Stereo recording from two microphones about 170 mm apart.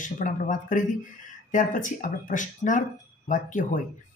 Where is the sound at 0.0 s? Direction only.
50° left (ahead or behind).